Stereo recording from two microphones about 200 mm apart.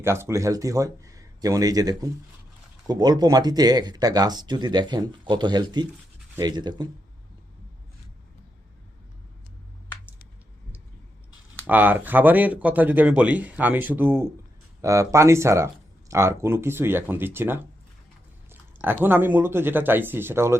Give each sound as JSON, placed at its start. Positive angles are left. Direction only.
{"t": 0.0, "sound": "speech", "side_deg": -15}
{"t": 11.6, "sound": "speech", "side_deg": -10}
{"t": 18.8, "sound": "speech", "side_deg": -10}